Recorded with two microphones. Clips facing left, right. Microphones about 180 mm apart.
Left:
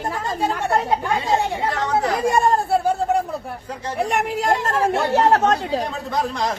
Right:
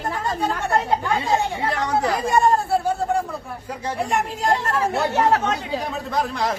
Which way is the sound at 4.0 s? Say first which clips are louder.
Left 2 dB; 70° left (ahead or behind).